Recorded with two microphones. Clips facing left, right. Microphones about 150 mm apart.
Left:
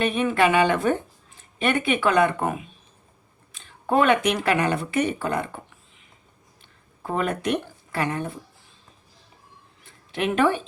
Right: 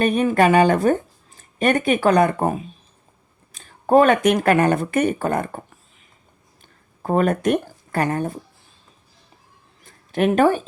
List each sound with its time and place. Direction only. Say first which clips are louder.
0.0 s speech: right 4 dB; 45° right (ahead or behind)
7.0 s speech: right 7 dB; 45° right (ahead or behind)
9.8 s speech: right 7 dB; 45° right (ahead or behind)